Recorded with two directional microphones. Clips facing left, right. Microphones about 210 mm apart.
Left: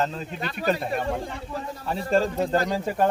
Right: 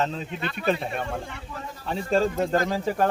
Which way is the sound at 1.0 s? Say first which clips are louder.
Left 4 dB; 35° left (ahead or behind).